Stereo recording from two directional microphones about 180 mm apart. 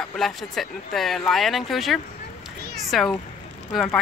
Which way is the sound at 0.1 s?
Centre (ahead or behind).